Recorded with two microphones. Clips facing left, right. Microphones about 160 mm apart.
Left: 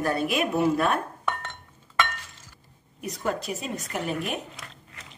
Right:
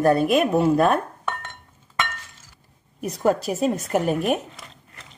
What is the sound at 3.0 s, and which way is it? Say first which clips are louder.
Speech: right 8 dB; 45° right (ahead or behind).